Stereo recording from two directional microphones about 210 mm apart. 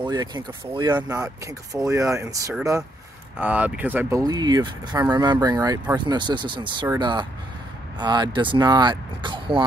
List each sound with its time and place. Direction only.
0.0 s speech: 20° right (ahead or behind)